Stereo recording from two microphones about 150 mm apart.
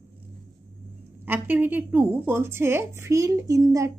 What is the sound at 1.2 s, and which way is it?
A woman's voice, 10° right (ahead or behind).